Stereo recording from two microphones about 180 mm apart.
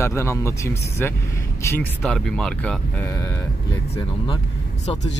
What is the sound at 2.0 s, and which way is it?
Speech, centre (ahead or behind).